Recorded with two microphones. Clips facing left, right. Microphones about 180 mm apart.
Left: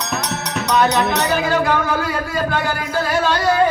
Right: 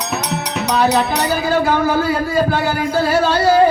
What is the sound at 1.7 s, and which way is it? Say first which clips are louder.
Speech: right 4 dB; 35° right (ahead or behind).